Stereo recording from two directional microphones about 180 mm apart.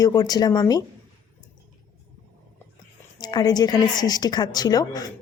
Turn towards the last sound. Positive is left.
turn(degrees=20)  # may be behind; listen again after turning